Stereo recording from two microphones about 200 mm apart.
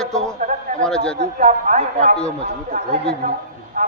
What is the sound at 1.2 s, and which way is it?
A woman's voice, 35° right (ahead or behind).